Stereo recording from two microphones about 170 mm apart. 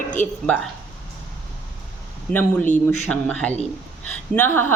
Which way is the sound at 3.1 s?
5° left (ahead or behind).